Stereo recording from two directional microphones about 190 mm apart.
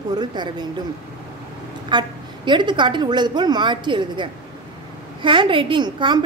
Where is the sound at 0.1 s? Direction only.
20° right (ahead or behind).